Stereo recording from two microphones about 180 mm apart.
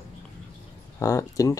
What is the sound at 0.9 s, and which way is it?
Speech, 15° left (ahead or behind).